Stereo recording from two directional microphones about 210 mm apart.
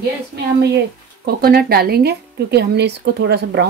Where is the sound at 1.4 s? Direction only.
45° right (ahead or behind).